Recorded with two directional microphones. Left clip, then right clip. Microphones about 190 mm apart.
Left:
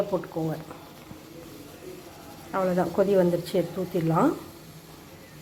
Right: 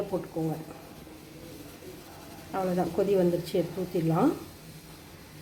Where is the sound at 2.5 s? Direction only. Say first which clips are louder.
Left 4 dB; centre (ahead or behind).